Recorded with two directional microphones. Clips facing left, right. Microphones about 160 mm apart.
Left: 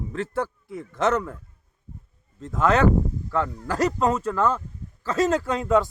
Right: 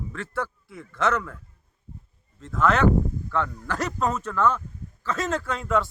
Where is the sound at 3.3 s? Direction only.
35° left (ahead or behind).